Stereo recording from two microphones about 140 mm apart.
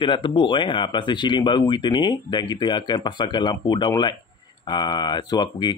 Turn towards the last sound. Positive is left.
turn(degrees=30)  # may be behind; listen again after turning